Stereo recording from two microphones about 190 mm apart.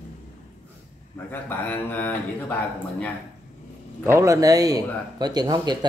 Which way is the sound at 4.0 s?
15° right (ahead or behind).